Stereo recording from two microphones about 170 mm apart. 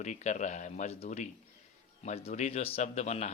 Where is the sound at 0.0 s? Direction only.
45° left (ahead or behind).